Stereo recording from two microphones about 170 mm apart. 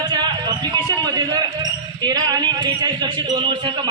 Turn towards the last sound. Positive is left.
turn(degrees=-30)  # may be behind; listen again after turning